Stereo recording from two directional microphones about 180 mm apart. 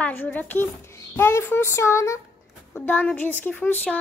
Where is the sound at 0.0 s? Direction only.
10° left (ahead or behind).